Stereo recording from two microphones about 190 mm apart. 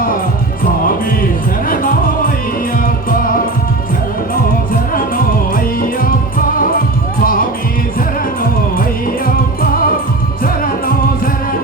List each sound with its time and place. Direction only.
1.6 s music: 50° left (ahead or behind)
4.7 s music: 45° left (ahead or behind)
9.2 s music: 50° left (ahead or behind)